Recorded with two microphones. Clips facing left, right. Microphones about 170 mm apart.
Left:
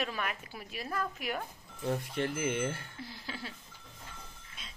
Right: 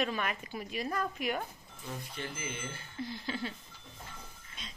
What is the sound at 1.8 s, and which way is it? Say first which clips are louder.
Speech: left 9 dB; 65° left (ahead or behind).